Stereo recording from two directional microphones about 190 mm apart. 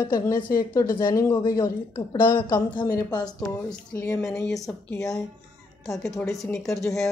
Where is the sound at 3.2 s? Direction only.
10° left (ahead or behind).